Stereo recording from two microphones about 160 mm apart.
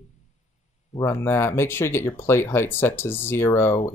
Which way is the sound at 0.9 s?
15° left (ahead or behind).